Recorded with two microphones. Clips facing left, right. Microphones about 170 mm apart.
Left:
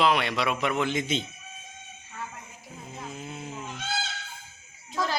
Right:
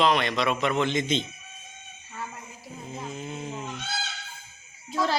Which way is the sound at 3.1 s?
5° left (ahead or behind).